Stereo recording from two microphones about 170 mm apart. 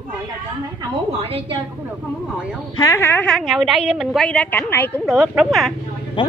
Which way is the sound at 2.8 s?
15° left (ahead or behind).